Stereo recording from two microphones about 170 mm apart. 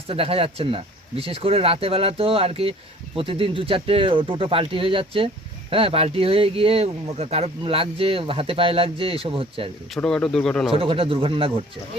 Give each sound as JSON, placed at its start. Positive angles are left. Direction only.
{"t": 0.1, "sound": "speech", "side_deg": -35}
{"t": 9.9, "sound": "speech", "side_deg": 5}
{"t": 10.7, "sound": "speech", "side_deg": -35}